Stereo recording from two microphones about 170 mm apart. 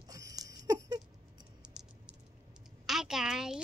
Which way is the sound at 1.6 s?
5° right (ahead or behind).